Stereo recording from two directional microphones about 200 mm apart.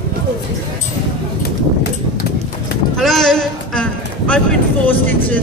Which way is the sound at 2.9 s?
Centre (ahead or behind).